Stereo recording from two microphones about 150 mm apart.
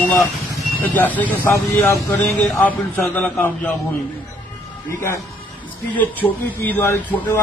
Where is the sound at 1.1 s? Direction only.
15° left (ahead or behind).